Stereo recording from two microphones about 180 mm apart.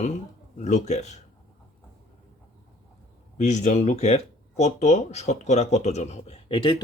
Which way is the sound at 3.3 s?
40° left (ahead or behind).